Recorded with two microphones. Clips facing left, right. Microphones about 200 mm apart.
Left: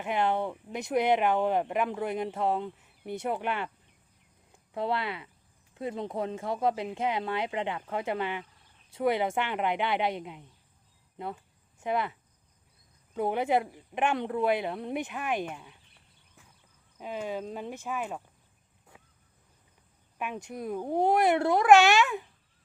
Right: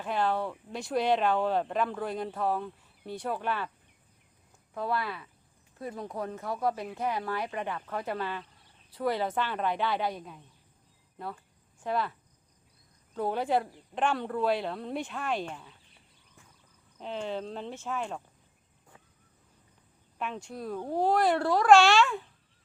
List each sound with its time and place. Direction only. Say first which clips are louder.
0.0 s speech: left 1 dB; 20° left (ahead or behind)
4.7 s speech: left 1 dB; 25° left (ahead or behind)
11.9 s speech: left 1 dB; 20° left (ahead or behind)
13.1 s speech: left 2 dB; 15° left (ahead or behind)
17.0 s speech: even; 10° left (ahead or behind)
18.9 s vehicle: left 1 dB; 15° left (ahead or behind)
20.1 s speech: left 1 dB; 15° left (ahead or behind)